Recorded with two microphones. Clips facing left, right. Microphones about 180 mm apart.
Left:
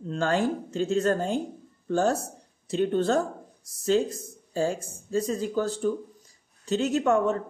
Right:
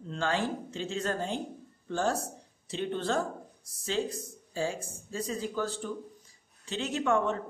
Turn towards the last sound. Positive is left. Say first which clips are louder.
# left 5 dB
turn(degrees=40)  # may be behind; listen again after turning